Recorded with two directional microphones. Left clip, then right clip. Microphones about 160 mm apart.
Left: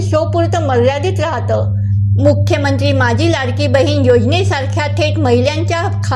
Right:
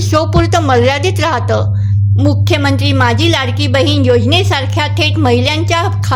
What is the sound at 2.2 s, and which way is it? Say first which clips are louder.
A woman's voice: left 1 dB; 5° right (ahead or behind).